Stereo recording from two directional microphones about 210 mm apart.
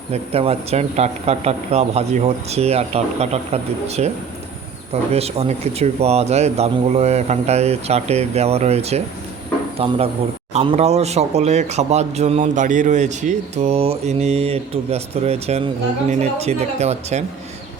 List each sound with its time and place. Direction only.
0.1 s a man's voice: 30° right (ahead or behind)
5.1 s a man's voice: 30° right (ahead or behind)